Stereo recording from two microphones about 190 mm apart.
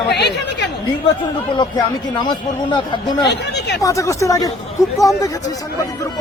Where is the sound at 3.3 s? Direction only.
65° left (ahead or behind).